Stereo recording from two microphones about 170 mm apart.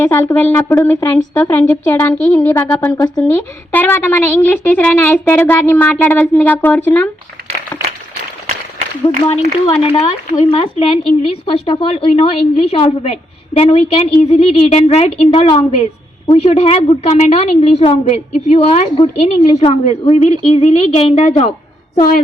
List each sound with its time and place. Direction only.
0.0 s a child's voice: 15° left (ahead or behind)
7.7 s a sound: 25° left (ahead or behind)
9.2 s a woman's voice: 35° left (ahead or behind)